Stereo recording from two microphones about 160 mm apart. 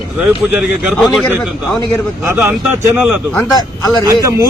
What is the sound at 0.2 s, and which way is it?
Speech, 5° right (ahead or behind).